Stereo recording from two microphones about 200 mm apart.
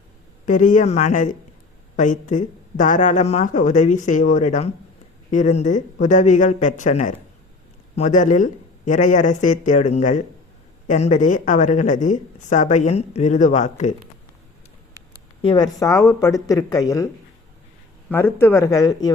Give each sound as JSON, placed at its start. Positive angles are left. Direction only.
{"t": 0.4, "sound": "speech", "side_deg": 40}
{"t": 15.4, "sound": "speech", "side_deg": 25}
{"t": 18.1, "sound": "speech", "side_deg": 10}